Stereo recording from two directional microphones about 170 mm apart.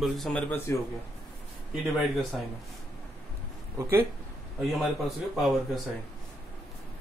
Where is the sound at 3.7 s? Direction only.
20° right (ahead or behind).